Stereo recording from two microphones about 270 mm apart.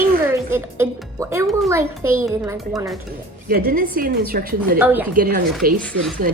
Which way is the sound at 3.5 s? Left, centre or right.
Right.